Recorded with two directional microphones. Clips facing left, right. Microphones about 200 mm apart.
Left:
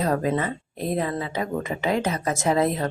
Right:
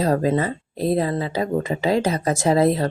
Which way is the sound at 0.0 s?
30° right (ahead or behind).